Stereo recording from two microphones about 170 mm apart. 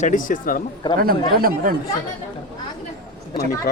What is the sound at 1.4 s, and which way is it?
Speech, 55° right (ahead or behind).